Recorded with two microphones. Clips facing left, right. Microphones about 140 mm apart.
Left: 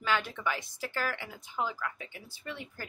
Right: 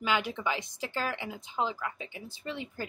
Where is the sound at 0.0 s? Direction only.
15° right (ahead or behind).